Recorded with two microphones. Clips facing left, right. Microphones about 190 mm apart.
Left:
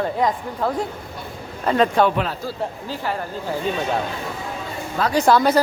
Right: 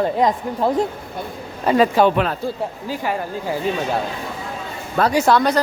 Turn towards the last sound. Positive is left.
turn(degrees=0)  # may be behind; listen again after turning